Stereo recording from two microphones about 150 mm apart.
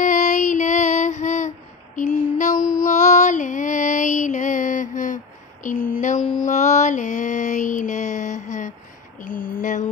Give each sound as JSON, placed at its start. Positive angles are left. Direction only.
{"t": 0.0, "sound": "female singing", "side_deg": 55}
{"t": 2.0, "sound": "music", "side_deg": 55}
{"t": 6.3, "sound": "mantra", "side_deg": 55}
{"t": 9.2, "sound": "a sound", "side_deg": 65}